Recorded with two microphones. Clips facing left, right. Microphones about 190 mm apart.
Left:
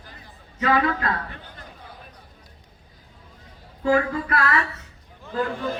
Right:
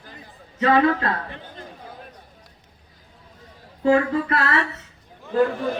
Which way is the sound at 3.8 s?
25° right (ahead or behind).